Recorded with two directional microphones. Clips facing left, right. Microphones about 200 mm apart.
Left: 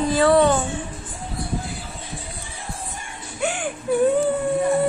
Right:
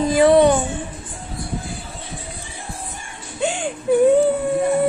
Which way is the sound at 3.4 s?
30° right (ahead or behind).